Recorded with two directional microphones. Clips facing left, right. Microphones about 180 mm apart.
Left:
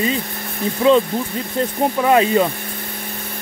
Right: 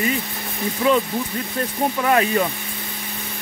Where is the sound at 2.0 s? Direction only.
20° left (ahead or behind).